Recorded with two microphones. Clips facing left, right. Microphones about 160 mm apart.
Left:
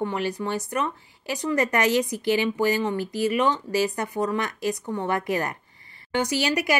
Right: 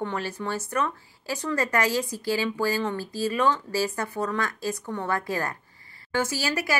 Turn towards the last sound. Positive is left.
turn(degrees=20)  # may be behind; listen again after turning